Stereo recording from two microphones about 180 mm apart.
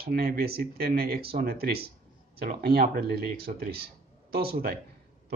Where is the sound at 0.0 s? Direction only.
60° right (ahead or behind).